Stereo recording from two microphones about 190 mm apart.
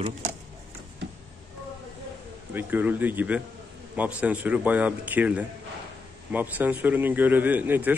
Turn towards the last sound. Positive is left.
turn(degrees=-10)  # may be behind; listen again after turning